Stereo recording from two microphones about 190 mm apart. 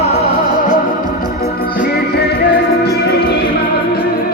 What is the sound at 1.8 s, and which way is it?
Music, 55° left (ahead or behind).